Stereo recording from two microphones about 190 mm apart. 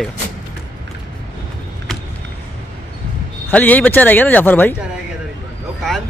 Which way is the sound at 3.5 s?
10° left (ahead or behind).